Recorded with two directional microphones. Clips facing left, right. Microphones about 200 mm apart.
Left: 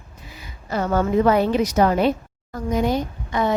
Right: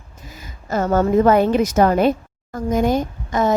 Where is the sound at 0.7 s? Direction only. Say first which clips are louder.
Right 3 dB; 45° right (ahead or behind).